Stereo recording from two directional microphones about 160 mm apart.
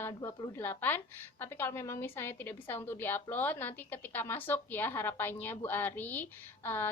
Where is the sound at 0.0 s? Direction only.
15° left (ahead or behind).